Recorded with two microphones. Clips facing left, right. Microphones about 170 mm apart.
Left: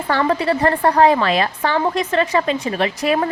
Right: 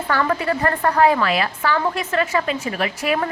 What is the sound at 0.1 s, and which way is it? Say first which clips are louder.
A woman's voice: left 3 dB; 30° left (ahead or behind).